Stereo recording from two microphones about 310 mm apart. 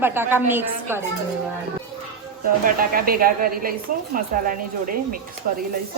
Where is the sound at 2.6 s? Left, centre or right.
Right.